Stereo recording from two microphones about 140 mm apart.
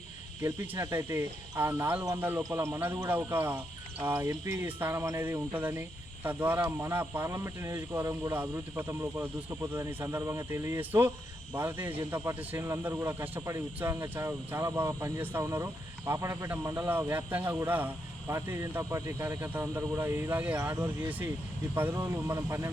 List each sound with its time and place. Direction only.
0.4 s a man's voice: 20° right (ahead or behind)